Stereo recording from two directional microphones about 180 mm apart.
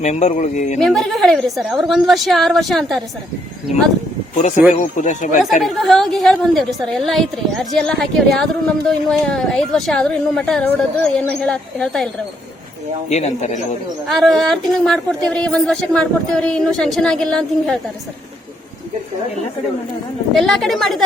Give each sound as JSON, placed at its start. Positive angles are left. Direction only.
{"t": 0.0, "sound": "speech", "side_deg": 40}
{"t": 0.8, "sound": "speech", "side_deg": 0}
{"t": 4.4, "sound": "speech", "side_deg": 40}
{"t": 5.6, "sound": "speech", "side_deg": 0}
{"t": 13.1, "sound": "speech", "side_deg": 40}
{"t": 14.1, "sound": "speech", "side_deg": 0}
{"t": 20.3, "sound": "speech", "side_deg": 0}